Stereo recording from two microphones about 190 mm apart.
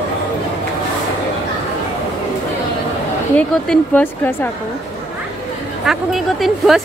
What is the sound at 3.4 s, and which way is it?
Speech, 5° left (ahead or behind).